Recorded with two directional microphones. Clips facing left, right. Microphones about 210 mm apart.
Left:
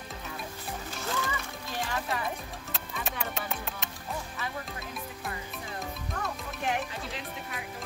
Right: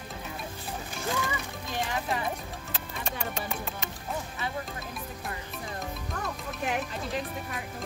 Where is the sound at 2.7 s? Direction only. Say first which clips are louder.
Even; centre (ahead or behind).